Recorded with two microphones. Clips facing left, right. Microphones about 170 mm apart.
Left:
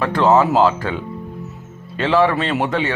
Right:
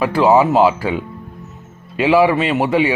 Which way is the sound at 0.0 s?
10° right (ahead or behind).